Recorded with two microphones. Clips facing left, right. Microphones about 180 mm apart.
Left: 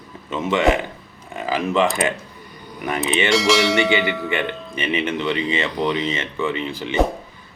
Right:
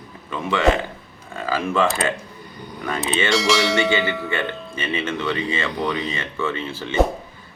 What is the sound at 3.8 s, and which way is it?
A man's voice, 20° left (ahead or behind).